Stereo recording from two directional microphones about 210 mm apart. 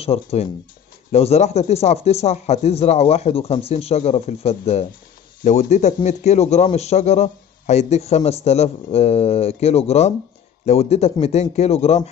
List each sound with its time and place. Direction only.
0.0 s a man's voice: 30° left (ahead or behind)